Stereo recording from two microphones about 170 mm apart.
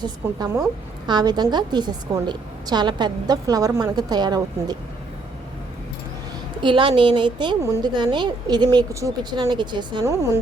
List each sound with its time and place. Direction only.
0.0 s a woman's voice: 20° right (ahead or behind)
6.6 s a woman's voice: 30° right (ahead or behind)
9.4 s a woman's voice: 30° right (ahead or behind)
10.0 s speech: 15° right (ahead or behind)